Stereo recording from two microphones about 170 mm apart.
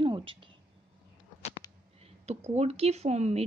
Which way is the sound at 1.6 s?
20° left (ahead or behind).